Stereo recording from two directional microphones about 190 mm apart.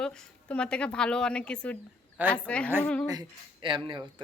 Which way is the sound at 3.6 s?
25° right (ahead or behind).